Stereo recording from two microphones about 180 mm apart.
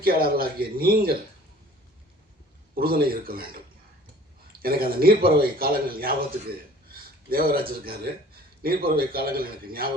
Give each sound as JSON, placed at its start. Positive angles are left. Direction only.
{"t": 0.0, "sound": "speech", "side_deg": -55}
{"t": 2.7, "sound": "speech", "side_deg": -55}
{"t": 4.6, "sound": "speech", "side_deg": -55}